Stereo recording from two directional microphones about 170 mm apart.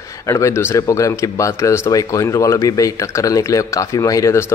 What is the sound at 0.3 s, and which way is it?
Speech, 15° left (ahead or behind).